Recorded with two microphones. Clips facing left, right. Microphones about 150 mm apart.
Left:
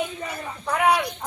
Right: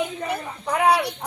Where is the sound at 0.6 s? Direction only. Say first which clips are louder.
Right 1 dB; 15° right (ahead or behind).